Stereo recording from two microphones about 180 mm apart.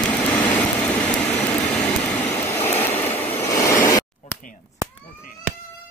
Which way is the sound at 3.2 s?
15° left (ahead or behind).